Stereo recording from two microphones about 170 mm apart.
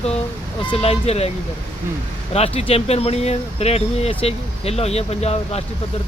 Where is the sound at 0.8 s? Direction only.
35° left (ahead or behind).